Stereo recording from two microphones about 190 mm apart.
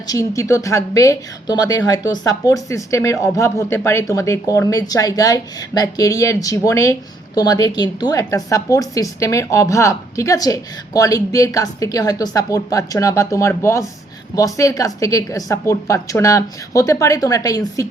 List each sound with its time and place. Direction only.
0.1 s a woman's voice: 15° left (ahead or behind)